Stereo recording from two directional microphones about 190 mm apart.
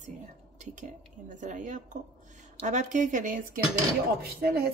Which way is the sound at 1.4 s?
40° right (ahead or behind).